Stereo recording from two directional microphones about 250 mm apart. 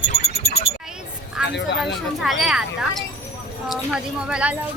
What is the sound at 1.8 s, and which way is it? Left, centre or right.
Speech, centre.